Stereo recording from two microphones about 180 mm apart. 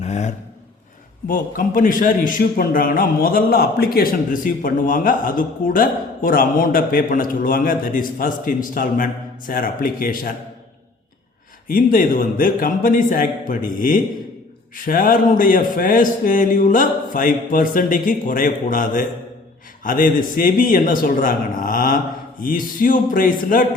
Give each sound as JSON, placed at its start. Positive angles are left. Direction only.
{"t": 0.0, "sound": "a sound", "side_deg": 40}
{"t": 1.3, "sound": "a man's voice", "side_deg": 50}
{"t": 11.7, "sound": "a man's voice", "side_deg": 50}